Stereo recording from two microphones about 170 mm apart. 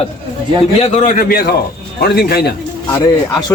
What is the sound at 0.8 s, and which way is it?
Speech, 50° left (ahead or behind).